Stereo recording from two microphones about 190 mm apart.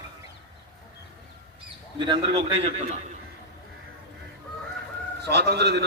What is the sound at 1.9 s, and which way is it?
A man's voice, 25° right (ahead or behind).